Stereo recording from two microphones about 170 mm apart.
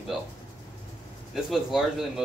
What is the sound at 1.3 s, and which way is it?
Speech, centre (ahead or behind).